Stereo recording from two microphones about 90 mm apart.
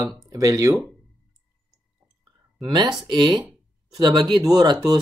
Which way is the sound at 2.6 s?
55° right (ahead or behind).